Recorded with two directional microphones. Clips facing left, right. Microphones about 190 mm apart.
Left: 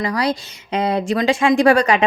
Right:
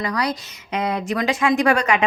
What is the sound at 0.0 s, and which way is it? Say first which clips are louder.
Speech: left 3 dB; 30° left (ahead or behind).